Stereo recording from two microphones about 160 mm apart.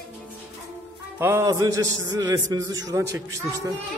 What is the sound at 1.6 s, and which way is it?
A man's voice, 25° right (ahead or behind).